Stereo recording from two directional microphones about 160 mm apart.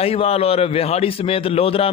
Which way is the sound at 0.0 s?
40° left (ahead or behind).